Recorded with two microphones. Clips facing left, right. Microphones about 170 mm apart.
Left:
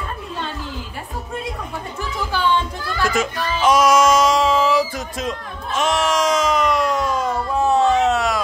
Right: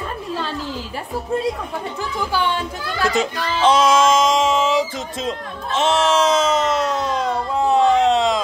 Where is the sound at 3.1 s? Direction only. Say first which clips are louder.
Right 1 dB; 20° right (ahead or behind).